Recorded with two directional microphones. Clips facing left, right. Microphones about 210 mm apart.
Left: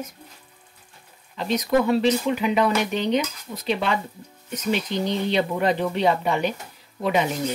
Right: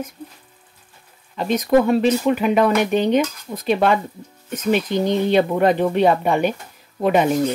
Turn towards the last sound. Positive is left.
turn(degrees=-50)  # may be behind; listen again after turning